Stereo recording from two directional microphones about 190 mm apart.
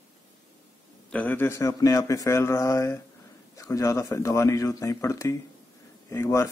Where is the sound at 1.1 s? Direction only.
10° left (ahead or behind).